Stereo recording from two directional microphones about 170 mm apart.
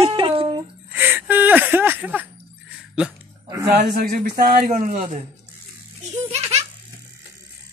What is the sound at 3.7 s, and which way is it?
A man's voice, 65° right (ahead or behind).